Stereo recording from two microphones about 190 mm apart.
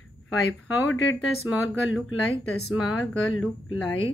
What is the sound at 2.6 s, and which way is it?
Speech, centre (ahead or behind).